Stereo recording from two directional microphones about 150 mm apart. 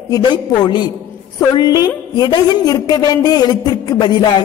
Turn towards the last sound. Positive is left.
turn(degrees=30)  # may be behind; listen again after turning